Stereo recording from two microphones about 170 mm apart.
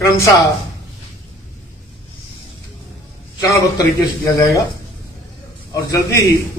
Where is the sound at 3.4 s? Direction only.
25° left (ahead or behind).